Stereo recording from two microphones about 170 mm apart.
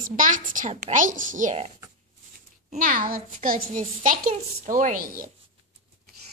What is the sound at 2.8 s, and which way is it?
A child's voice, 55° right (ahead or behind).